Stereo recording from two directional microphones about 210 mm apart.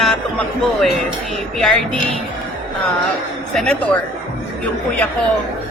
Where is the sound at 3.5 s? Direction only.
5° left (ahead or behind).